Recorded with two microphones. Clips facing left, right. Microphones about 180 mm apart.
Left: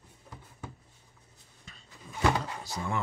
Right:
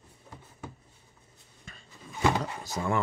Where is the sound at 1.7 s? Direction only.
55° right (ahead or behind).